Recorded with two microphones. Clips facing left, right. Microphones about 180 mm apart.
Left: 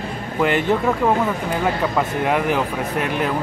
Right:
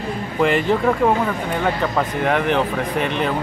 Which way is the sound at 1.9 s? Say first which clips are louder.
Even; 5° left (ahead or behind).